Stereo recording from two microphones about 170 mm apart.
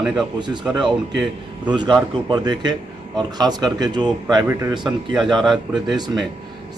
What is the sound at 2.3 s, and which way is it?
Speech, 25° right (ahead or behind).